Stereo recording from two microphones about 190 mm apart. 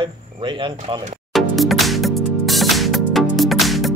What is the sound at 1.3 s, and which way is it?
Music, centre (ahead or behind).